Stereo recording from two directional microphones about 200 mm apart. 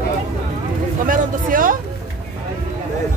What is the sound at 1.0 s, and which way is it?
Speech, 45° right (ahead or behind).